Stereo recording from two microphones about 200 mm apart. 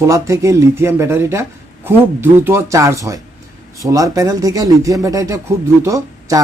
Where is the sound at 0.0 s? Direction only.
15° right (ahead or behind).